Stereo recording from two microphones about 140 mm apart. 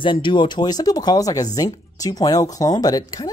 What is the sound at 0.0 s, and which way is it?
Speech, 35° left (ahead or behind).